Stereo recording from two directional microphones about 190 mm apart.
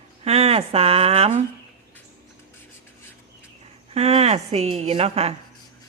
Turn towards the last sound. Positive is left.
turn(degrees=-35)  # may be behind; listen again after turning